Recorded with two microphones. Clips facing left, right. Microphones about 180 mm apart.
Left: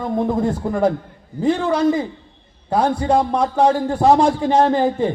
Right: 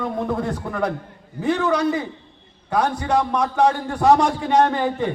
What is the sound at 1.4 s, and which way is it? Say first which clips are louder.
A man's voice: left 3 dB; 30° left (ahead or behind).